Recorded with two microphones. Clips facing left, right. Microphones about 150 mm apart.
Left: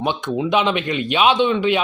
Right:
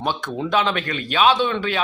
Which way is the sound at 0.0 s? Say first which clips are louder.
Left 3 dB; 15° left (ahead or behind).